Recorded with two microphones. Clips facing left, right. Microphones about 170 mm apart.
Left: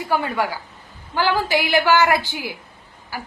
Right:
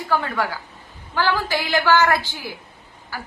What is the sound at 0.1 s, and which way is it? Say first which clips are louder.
A woman's voice: left 1 dB; 15° left (ahead or behind).